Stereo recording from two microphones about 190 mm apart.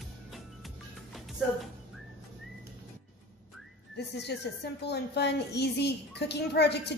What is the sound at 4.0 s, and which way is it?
A woman's voice, 60° left (ahead or behind).